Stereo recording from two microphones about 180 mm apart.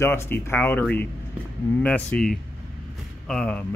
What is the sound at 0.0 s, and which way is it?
Speech, 15° left (ahead or behind).